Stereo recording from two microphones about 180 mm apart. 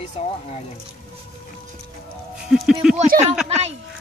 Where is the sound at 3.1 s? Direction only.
50° right (ahead or behind).